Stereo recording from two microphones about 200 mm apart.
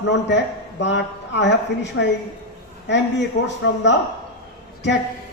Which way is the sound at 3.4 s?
60° left (ahead or behind).